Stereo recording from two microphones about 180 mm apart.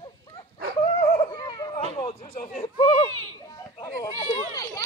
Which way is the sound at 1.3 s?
20° left (ahead or behind).